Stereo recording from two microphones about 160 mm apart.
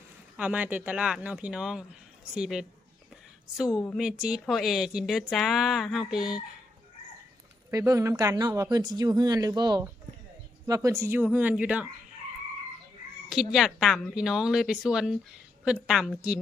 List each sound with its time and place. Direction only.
0.3 s speech: 10° right (ahead or behind)
3.8 s speech: centre (ahead or behind)
7.7 s speech: 20° right (ahead or behind)
13.3 s speech: centre (ahead or behind)